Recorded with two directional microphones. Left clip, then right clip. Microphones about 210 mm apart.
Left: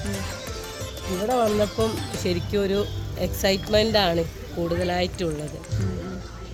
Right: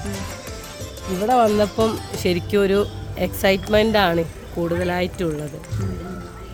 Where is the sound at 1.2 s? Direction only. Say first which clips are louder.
Right 5 dB; 65° right (ahead or behind); by 5.2 s 40° right (ahead or behind).